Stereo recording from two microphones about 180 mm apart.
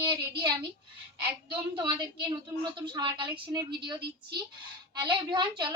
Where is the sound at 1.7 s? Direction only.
25° right (ahead or behind).